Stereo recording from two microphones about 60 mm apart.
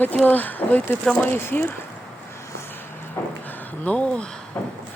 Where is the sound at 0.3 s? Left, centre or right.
Left.